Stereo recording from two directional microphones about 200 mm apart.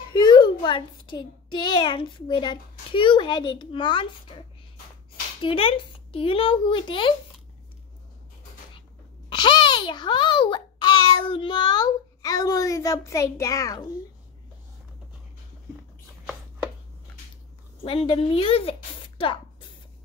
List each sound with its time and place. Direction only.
0.1 s a child's voice: 20° left (ahead or behind)
9.3 s a child's voice: 20° left (ahead or behind)
17.8 s a woman's voice: 25° left (ahead or behind)